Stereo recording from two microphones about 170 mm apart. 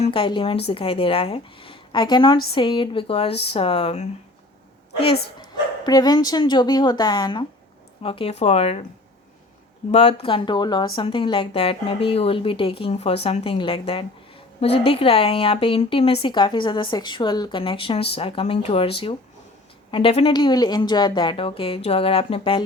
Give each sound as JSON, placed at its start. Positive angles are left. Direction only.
{"t": 0.0, "sound": "a woman's voice", "side_deg": 30}
{"t": 5.8, "sound": "speech", "side_deg": 25}
{"t": 9.9, "sound": "speech", "side_deg": 35}